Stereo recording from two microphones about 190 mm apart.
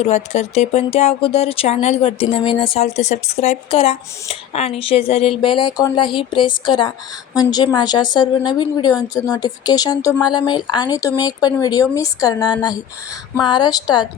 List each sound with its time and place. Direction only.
0.0 s a woman's voice: 35° left (ahead or behind)